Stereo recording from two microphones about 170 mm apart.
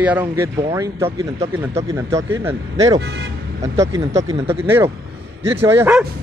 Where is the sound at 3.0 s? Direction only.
75° right (ahead or behind).